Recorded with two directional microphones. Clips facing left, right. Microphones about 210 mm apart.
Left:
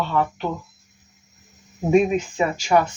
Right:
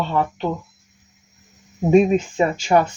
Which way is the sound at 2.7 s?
30° right (ahead or behind).